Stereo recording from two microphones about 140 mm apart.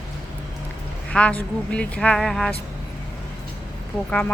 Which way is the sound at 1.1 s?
10° left (ahead or behind).